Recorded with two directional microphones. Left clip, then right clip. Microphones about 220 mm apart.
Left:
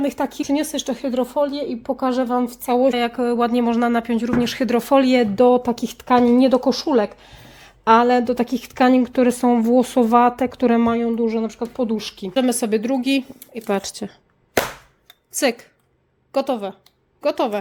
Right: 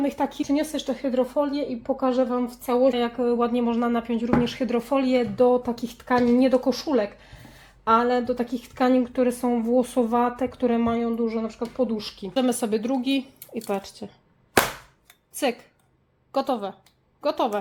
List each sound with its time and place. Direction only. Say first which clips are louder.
0.0 s speech: left 3 dB; 35° left (ahead or behind)
0.4 s speech: left 3 dB; 50° left (ahead or behind)
12.3 s speech: left 4 dB; 30° left (ahead or behind)
15.4 s speech: left 6 dB; 30° left (ahead or behind)